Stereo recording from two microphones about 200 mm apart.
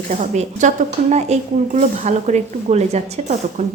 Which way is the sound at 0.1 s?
35° right (ahead or behind).